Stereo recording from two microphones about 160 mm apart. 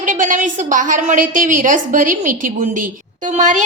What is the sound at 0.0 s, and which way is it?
A woman's voice, 55° right (ahead or behind).